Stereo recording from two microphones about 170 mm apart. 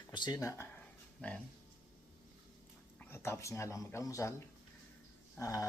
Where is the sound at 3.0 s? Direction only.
15° left (ahead or behind).